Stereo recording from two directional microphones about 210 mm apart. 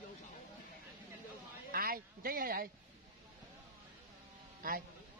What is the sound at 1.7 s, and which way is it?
Speech, 45° right (ahead or behind).